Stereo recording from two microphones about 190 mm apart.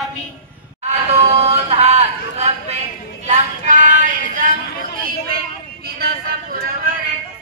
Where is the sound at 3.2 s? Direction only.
40° right (ahead or behind).